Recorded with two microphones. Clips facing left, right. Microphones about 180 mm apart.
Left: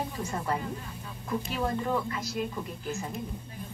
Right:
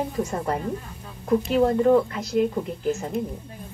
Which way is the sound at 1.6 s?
55° right (ahead or behind).